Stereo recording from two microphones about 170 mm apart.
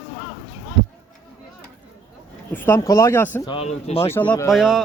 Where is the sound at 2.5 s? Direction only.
10° left (ahead or behind).